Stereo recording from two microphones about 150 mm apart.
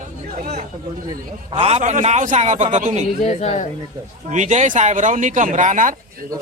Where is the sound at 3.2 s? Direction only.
50° left (ahead or behind).